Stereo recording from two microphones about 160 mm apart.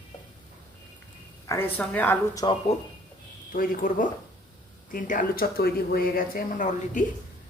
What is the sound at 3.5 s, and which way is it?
Speech, 60° left (ahead or behind).